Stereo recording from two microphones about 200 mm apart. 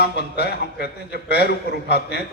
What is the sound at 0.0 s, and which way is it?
A man's voice, 55° left (ahead or behind).